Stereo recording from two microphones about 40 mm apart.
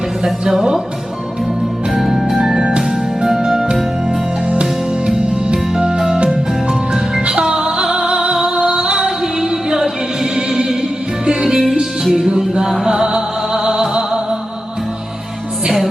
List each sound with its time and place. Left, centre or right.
0.4 s music: centre
1.9 s music: centre
4.6 s music: right